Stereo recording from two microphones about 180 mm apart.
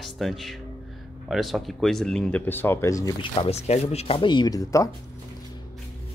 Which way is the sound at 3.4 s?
35° left (ahead or behind).